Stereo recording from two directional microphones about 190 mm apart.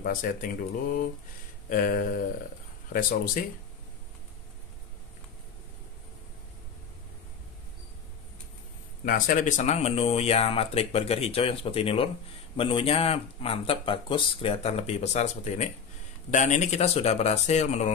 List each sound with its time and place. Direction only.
0.0 s speech: 45° left (ahead or behind)
9.0 s speech: 45° left (ahead or behind)